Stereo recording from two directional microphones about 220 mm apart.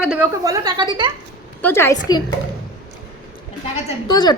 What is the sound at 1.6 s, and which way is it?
Speech, 10° left (ahead or behind).